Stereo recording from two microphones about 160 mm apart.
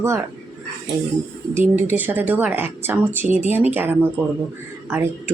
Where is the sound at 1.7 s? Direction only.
10° right (ahead or behind).